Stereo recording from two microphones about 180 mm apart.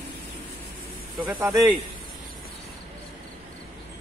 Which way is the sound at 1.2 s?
10° right (ahead or behind).